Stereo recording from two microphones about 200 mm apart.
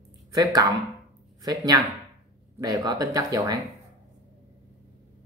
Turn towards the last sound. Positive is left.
turn(degrees=-15)  # may be behind; listen again after turning